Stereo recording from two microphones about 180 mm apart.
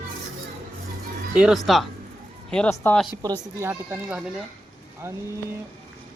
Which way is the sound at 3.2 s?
15° right (ahead or behind).